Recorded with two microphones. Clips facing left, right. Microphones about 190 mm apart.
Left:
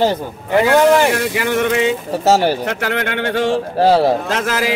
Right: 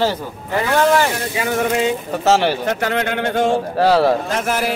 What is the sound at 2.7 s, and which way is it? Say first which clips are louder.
Speech: right 1 dB; 65° left (ahead or behind).